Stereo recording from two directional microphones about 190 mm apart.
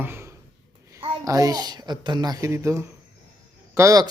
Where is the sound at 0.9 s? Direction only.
15° right (ahead or behind).